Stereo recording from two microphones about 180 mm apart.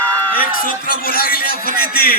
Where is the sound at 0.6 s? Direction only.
55° left (ahead or behind).